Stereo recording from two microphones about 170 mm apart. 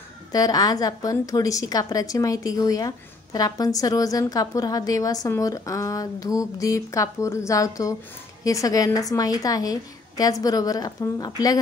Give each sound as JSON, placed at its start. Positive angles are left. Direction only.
{"t": 0.3, "sound": "a woman's voice", "side_deg": 20}